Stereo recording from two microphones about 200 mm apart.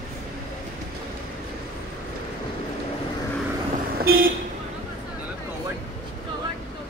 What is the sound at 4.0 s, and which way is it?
Vehicle, 50° right (ahead or behind).